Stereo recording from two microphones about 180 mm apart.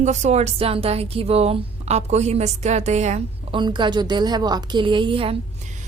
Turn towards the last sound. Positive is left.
turn(degrees=-30)  # may be behind; listen again after turning